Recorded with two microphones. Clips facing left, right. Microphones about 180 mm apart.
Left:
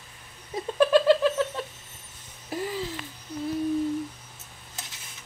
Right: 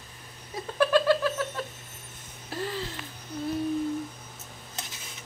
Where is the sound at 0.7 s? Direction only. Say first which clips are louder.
Left 3 dB; 20° left (ahead or behind).